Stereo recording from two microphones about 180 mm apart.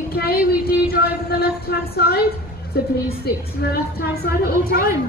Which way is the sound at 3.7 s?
60° left (ahead or behind).